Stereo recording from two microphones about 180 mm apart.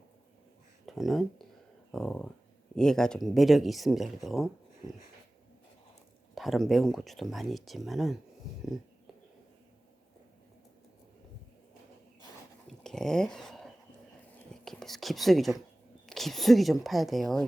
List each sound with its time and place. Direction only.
0.9 s speech: centre (ahead or behind)
6.3 s speech: centre (ahead or behind)
12.8 s speech: 5° left (ahead or behind)